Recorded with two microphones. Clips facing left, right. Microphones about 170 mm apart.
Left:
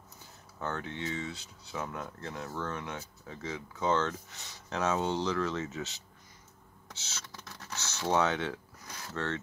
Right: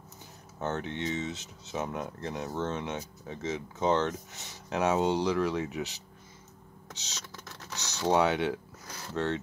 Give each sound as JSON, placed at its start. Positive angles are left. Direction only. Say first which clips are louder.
{"t": 0.6, "sound": "speech", "louder": "right 4 dB", "side_deg": -20}
{"t": 6.9, "sound": "computer keyboard", "louder": "right 1 dB", "side_deg": -15}
{"t": 7.7, "sound": "speech", "louder": "right 3 dB", "side_deg": -15}